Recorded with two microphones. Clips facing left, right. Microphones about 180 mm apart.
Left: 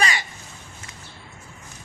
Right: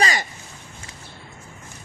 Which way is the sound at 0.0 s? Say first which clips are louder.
Right 2 dB; 40° right (ahead or behind).